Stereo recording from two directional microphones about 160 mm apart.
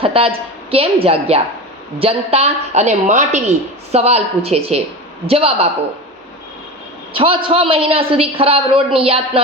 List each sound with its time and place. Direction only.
0.0 s a woman's voice: 35° right (ahead or behind)
7.1 s a man's voice: 35° right (ahead or behind)